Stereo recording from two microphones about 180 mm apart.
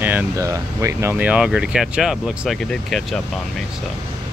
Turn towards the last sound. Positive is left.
turn(degrees=0)  # may be behind; listen again after turning